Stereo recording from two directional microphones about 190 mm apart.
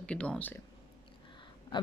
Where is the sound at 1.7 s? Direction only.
25° left (ahead or behind).